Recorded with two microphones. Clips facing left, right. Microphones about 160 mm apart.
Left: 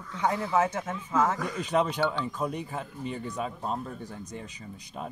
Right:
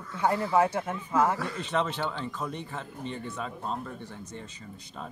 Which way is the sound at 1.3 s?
15° left (ahead or behind).